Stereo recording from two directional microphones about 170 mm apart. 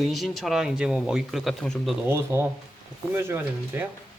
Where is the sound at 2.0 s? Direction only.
15° right (ahead or behind).